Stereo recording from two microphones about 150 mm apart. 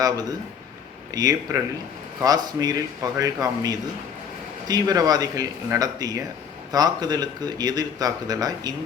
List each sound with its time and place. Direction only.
0.0 s speech: 25° right (ahead or behind)